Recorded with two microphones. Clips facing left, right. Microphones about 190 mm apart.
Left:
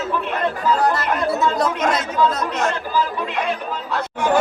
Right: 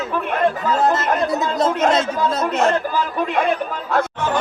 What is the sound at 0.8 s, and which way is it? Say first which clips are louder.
Speech: right 1 dB; 20° right (ahead or behind).